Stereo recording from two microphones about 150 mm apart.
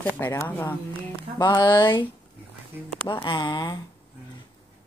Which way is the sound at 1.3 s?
30° left (ahead or behind).